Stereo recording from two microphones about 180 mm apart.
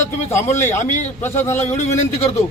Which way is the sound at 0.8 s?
40° left (ahead or behind).